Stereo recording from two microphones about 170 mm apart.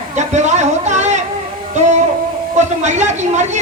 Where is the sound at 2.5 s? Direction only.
40° right (ahead or behind).